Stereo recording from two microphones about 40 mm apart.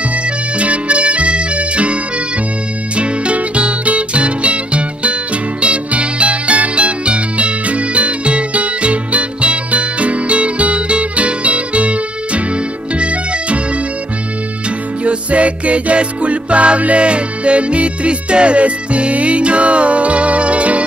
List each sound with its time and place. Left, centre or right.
0.6 s music: right
3.0 s music: right
15.0 s music: right